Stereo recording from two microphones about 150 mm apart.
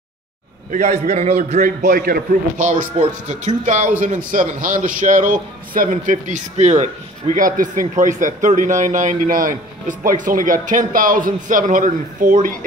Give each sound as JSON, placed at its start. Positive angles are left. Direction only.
{"t": 0.7, "sound": "a man's voice", "side_deg": -50}
{"t": 1.6, "sound": "a man's voice", "side_deg": -65}